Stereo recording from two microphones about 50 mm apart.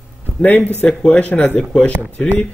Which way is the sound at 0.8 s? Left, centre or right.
Centre.